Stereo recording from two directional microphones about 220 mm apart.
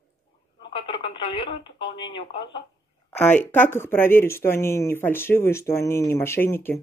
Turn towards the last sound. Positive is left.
turn(degrees=10)  # may be behind; listen again after turning